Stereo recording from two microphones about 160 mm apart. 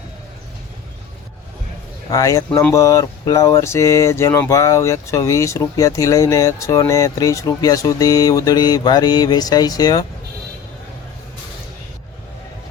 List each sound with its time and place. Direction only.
2.0 s speech: 20° left (ahead or behind)